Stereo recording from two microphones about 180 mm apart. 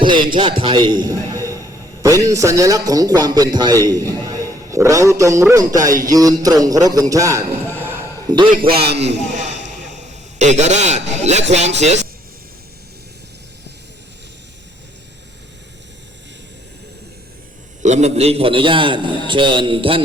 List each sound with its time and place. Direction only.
0.0 s a man's voice: 25° right (ahead or behind)
8.7 s a man's voice: 65° right (ahead or behind)
9.3 s a sound: 40° right (ahead or behind)
11.8 s a man's voice: 40° right (ahead or behind)
17.8 s a man's voice: 40° right (ahead or behind)